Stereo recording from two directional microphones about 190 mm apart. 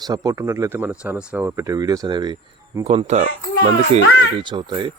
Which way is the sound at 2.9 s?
35° right (ahead or behind).